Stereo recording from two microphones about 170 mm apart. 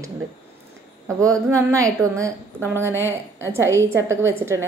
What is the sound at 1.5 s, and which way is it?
A woman's voice, 20° right (ahead or behind).